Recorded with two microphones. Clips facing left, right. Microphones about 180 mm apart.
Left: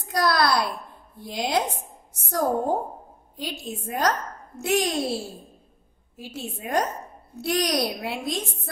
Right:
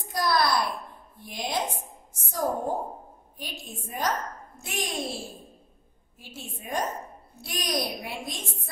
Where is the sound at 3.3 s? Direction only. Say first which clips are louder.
Left 8 dB; 75° left (ahead or behind).